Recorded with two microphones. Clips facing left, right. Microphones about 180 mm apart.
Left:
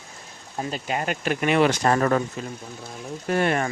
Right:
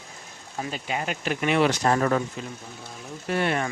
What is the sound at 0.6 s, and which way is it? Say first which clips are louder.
Speech: left 3 dB; 45° left (ahead or behind).